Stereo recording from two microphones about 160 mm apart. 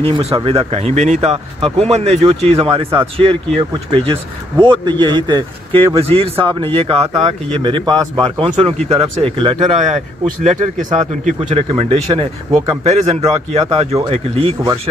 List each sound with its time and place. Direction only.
0.0 s speech: 35° right (ahead or behind)
9.8 s speech: 50° right (ahead or behind)
11.7 s speech: 30° right (ahead or behind)
12.8 s speech: 40° right (ahead or behind)